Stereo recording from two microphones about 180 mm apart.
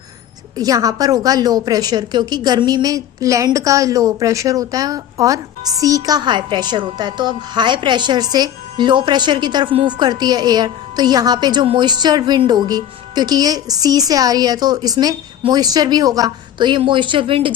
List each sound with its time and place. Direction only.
0.5 s a woman's voice: 20° right (ahead or behind)